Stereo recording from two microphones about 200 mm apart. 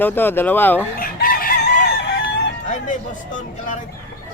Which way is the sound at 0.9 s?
45° left (ahead or behind).